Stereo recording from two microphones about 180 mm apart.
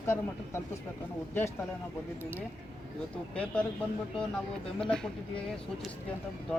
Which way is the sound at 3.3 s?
5° left (ahead or behind).